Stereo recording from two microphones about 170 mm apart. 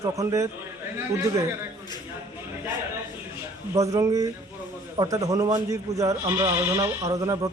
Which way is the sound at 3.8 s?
20° right (ahead or behind).